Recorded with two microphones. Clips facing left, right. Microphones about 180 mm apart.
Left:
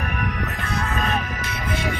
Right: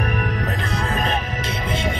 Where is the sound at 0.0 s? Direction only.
30° right (ahead or behind).